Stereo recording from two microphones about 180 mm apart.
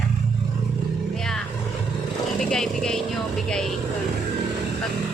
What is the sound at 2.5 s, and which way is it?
Speech, 5° left (ahead or behind).